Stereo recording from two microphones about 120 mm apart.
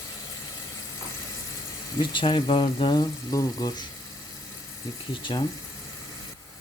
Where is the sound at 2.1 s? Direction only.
40° left (ahead or behind).